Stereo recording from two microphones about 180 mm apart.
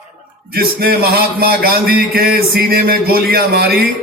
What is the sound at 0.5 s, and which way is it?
Speech, 60° right (ahead or behind).